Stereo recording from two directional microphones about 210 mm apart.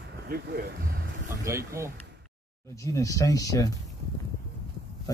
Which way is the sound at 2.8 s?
15° left (ahead or behind).